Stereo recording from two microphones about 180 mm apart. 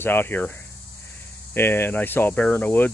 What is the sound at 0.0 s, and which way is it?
Speech, 10° left (ahead or behind).